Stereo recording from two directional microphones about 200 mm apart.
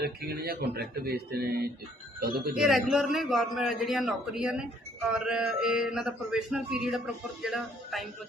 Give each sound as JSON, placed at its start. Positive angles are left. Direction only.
{"t": 0.0, "sound": "speech", "side_deg": -50}
{"t": 2.6, "sound": "a man's voice", "side_deg": 0}